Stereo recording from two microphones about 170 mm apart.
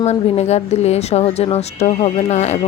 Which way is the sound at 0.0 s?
40° left (ahead or behind).